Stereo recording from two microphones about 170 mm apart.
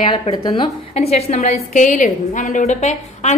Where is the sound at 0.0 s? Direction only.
30° left (ahead or behind).